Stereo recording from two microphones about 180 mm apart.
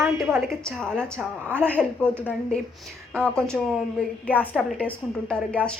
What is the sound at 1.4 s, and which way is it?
Speech, 10° right (ahead or behind).